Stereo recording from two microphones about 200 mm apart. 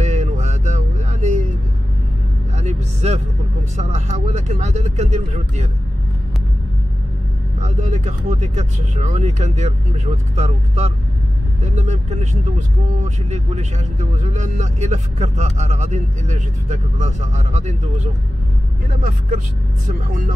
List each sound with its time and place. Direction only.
0.0 s a sound: 35° right (ahead or behind)
2.5 s vehicle: 35° right (ahead or behind)
3.7 s speech: 35° right (ahead or behind)
7.6 s speech: 35° right (ahead or behind)
20.1 s speech: 40° right (ahead or behind)